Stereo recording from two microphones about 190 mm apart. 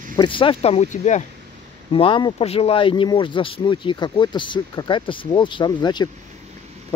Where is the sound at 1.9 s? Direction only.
25° left (ahead or behind).